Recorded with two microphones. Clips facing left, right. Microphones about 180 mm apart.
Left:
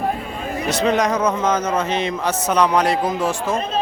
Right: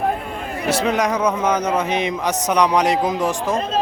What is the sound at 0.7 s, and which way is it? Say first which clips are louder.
Speech: left 1 dB; 10° right (ahead or behind).